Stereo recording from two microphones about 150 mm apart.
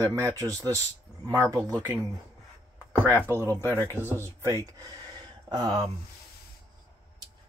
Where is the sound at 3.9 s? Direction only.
15° right (ahead or behind).